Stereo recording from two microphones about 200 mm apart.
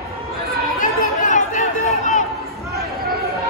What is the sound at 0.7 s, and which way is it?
Chatter, 40° left (ahead or behind).